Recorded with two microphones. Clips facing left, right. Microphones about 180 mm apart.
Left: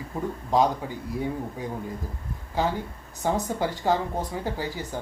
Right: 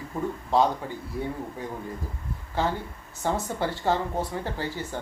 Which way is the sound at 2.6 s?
15° left (ahead or behind).